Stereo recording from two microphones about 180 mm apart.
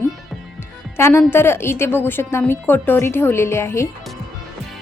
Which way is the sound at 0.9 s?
15° left (ahead or behind).